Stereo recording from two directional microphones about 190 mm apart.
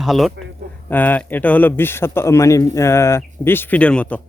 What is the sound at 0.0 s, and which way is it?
Speech, centre (ahead or behind).